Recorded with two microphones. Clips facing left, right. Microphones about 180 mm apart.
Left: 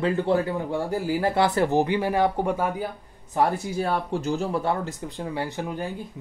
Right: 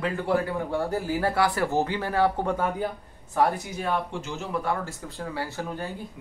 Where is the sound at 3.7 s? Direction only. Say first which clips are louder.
Left 3 dB; 35° left (ahead or behind); by 5.9 s 15° left (ahead or behind).